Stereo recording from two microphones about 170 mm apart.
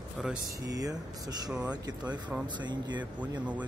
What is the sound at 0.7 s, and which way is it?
Speech, 20° right (ahead or behind).